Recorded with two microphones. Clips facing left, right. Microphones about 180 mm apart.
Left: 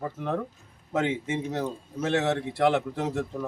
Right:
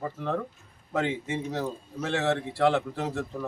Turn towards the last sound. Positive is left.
turn(degrees=15)  # may be behind; listen again after turning